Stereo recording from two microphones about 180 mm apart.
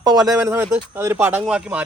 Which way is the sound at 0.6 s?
10° right (ahead or behind).